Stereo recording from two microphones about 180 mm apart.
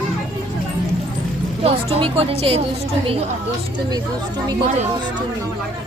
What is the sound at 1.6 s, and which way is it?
A woman's voice, 30° right (ahead or behind).